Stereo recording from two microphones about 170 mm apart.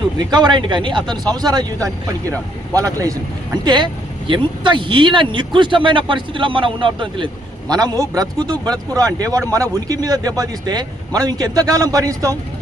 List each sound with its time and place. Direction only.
0.2 s speech: 25° right (ahead or behind)